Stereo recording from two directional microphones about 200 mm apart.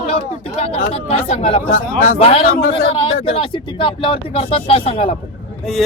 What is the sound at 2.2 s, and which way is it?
Speech, 30° left (ahead or behind).